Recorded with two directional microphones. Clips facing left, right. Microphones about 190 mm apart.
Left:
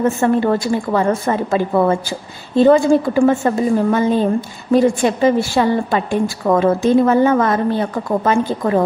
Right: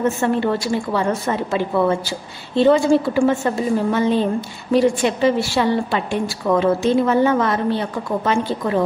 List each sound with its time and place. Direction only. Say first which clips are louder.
0.2 s a woman's voice: left 4 dB; 50° left (ahead or behind)